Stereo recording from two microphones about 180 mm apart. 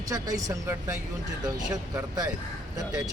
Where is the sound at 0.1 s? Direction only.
20° right (ahead or behind).